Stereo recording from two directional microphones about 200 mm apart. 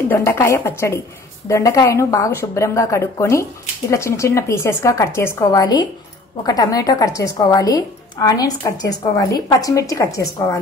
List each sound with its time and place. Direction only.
0.1 s a woman's voice: 10° left (ahead or behind)